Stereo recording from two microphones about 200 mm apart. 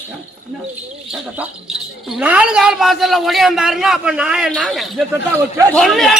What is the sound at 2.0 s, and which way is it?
A man's voice, 5° right (ahead or behind).